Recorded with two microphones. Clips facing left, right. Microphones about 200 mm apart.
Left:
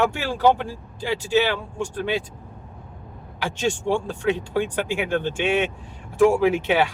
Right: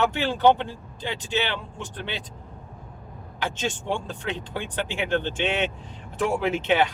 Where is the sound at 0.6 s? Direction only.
10° left (ahead or behind).